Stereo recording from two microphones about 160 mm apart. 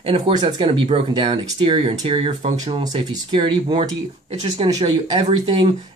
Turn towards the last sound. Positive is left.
turn(degrees=-35)  # may be behind; listen again after turning